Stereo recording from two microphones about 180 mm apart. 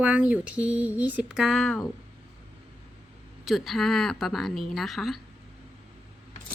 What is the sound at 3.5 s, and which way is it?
A woman's voice, centre (ahead or behind).